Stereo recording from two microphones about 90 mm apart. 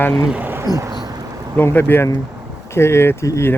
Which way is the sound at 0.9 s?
45° right (ahead or behind).